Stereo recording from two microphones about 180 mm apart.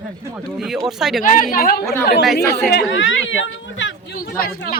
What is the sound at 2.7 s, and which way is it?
Speech, 80° left.